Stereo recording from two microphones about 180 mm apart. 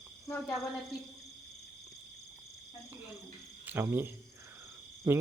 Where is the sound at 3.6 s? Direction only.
10° right (ahead or behind).